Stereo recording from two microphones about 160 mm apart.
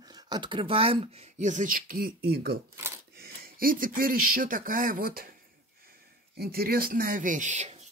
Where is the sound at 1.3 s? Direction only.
50° right (ahead or behind).